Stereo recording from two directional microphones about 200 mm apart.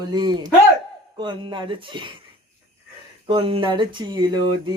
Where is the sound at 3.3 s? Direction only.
25° right (ahead or behind).